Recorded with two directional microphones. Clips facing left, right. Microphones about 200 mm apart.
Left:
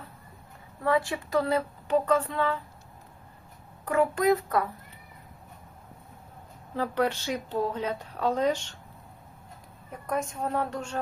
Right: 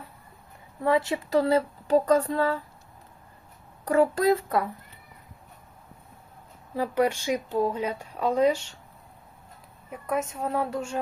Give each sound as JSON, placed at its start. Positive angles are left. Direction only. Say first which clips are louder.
{"t": 0.9, "sound": "speech", "louder": "right 2 dB", "side_deg": -20}
{"t": 3.8, "sound": "a child's voice", "louder": "right 2 dB", "side_deg": -35}
{"t": 6.7, "sound": "speech", "louder": "right 3 dB", "side_deg": -10}
{"t": 9.9, "sound": "a woman's voice", "louder": "right 2 dB", "side_deg": -5}